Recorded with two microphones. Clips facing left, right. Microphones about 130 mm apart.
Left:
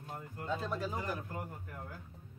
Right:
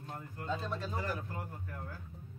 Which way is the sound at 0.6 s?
10° left (ahead or behind).